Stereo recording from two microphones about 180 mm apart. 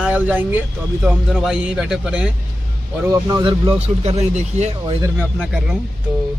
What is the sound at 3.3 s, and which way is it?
Speech, 25° right (ahead or behind).